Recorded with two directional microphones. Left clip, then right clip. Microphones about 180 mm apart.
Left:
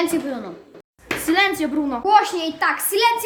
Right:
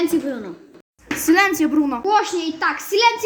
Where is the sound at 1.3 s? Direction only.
20° right (ahead or behind).